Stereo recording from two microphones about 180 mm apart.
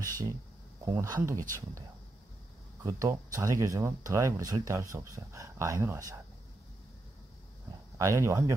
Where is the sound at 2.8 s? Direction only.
15° right (ahead or behind).